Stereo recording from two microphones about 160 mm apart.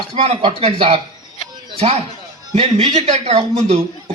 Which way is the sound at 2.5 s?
40° right (ahead or behind).